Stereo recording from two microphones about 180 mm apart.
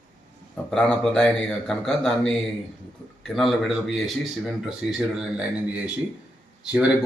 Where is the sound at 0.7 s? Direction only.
5° left (ahead or behind).